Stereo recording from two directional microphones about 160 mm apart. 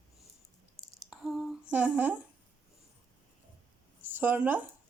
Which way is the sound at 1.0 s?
Centre (ahead or behind).